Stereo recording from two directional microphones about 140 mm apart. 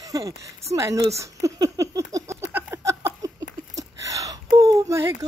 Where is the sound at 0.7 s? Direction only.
20° right (ahead or behind).